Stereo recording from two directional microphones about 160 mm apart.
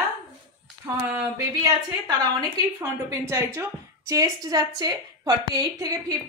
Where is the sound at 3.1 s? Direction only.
15° right (ahead or behind).